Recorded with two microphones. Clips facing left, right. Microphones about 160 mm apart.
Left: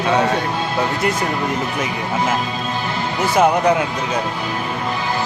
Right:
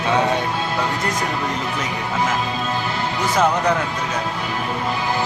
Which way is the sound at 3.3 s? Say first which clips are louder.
Left 4 dB; 10° left (ahead or behind).